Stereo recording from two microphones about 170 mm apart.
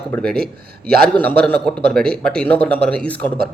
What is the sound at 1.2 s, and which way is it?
Speech, 5° left (ahead or behind).